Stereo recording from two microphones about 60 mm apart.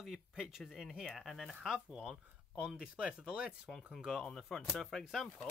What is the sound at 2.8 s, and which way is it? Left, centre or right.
Speech, centre.